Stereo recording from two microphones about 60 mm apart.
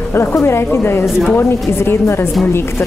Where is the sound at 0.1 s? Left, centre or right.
Left.